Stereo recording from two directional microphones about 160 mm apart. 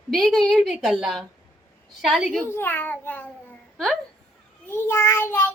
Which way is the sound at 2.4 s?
15° left (ahead or behind).